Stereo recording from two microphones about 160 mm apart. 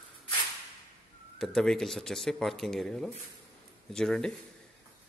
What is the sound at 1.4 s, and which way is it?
A man's voice, 5° left (ahead or behind).